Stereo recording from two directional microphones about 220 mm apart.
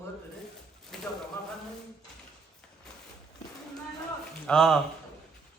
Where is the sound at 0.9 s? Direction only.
Centre (ahead or behind).